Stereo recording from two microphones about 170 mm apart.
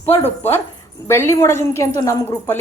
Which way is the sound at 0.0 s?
15° left (ahead or behind).